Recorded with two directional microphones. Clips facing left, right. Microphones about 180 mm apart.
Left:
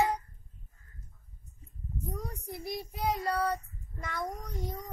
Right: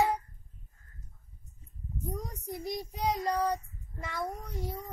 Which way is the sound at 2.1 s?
20° right (ahead or behind).